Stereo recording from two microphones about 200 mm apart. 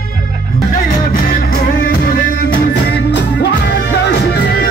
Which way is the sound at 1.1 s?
45° left (ahead or behind).